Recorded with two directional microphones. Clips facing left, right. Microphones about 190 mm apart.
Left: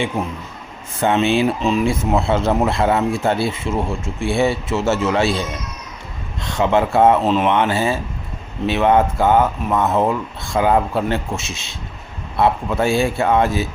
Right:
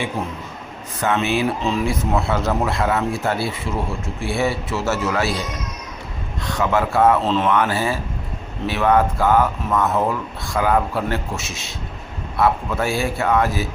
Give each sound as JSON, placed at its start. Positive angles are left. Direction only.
{"t": 1.0, "sound": "speech", "side_deg": 25}